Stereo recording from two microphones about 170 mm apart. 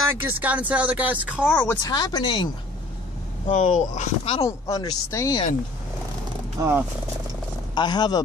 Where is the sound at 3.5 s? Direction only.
45° left (ahead or behind).